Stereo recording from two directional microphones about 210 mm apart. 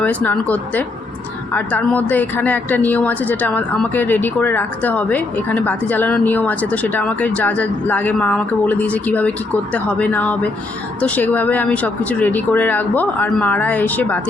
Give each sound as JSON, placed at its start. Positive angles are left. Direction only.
{"t": 0.0, "sound": "speech", "side_deg": 5}